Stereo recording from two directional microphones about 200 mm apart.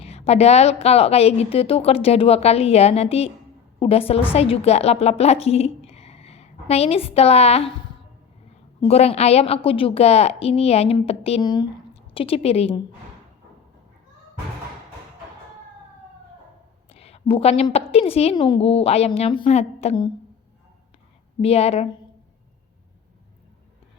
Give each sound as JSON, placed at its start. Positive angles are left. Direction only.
{"t": 0.0, "sound": "a woman's voice", "side_deg": 30}
{"t": 8.8, "sound": "a woman's voice", "side_deg": 30}
{"t": 16.9, "sound": "a woman's voice", "side_deg": 30}
{"t": 21.4, "sound": "a woman's voice", "side_deg": 30}